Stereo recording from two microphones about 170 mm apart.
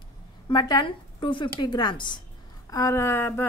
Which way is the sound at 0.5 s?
25° left (ahead or behind).